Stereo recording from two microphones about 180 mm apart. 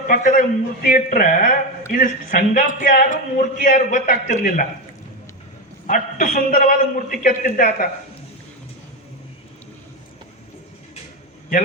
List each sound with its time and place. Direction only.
0.1 s speech: 45° left (ahead or behind)
5.8 s speech: 45° left (ahead or behind)